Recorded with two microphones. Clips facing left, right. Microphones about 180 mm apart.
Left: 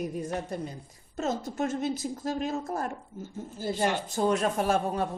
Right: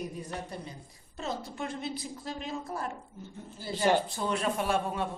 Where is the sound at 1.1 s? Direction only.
45° left (ahead or behind).